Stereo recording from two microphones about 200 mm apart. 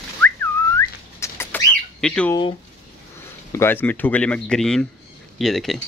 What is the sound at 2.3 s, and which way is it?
Speech, 25° left (ahead or behind).